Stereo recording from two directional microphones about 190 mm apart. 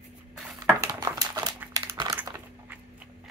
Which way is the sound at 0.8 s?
20° right (ahead or behind).